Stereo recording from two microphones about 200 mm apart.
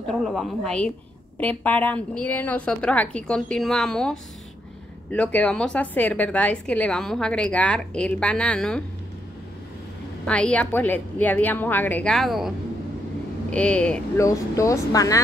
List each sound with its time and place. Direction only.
0.1 s a woman's voice: centre (ahead or behind)
10.2 s a woman's voice: 5° left (ahead or behind)